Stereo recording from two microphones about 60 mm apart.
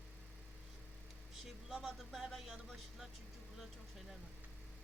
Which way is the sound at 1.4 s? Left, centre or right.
Centre.